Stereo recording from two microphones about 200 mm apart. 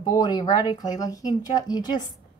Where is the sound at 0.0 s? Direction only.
20° left (ahead or behind).